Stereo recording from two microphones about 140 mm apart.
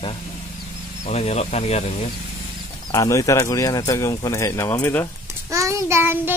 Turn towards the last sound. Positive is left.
turn(degrees=-15)  # may be behind; listen again after turning